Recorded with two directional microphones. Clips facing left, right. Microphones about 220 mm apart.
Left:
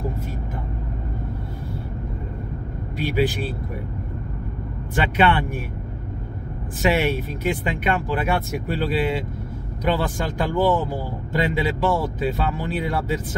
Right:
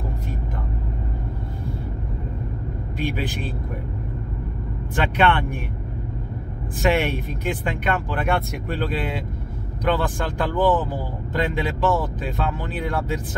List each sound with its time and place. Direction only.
3.0 s speech: 10° left (ahead or behind)
4.9 s speech: 5° left (ahead or behind)
6.8 s speech: 5° left (ahead or behind)